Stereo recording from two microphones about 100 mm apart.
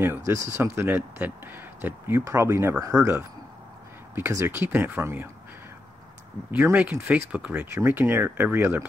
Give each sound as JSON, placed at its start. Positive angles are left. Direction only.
{"t": 0.0, "sound": "speech", "side_deg": -25}
{"t": 4.1, "sound": "speech", "side_deg": -30}
{"t": 6.5, "sound": "speech", "side_deg": -15}